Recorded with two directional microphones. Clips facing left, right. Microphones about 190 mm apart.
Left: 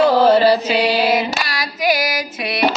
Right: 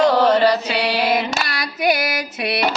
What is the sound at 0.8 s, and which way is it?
Female singing, 65° right (ahead or behind).